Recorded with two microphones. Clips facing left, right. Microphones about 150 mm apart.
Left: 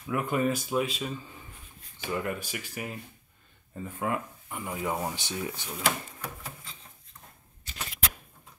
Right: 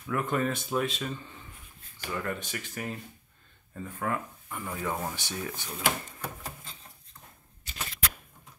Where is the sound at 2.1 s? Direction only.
20° left (ahead or behind).